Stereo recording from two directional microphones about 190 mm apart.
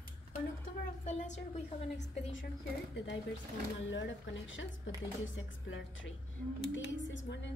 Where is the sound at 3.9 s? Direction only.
80° left.